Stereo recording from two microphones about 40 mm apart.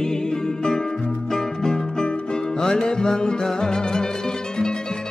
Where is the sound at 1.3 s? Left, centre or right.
Centre.